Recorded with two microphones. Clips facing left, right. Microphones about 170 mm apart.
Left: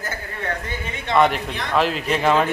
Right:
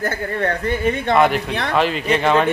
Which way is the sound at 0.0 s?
60° right (ahead or behind).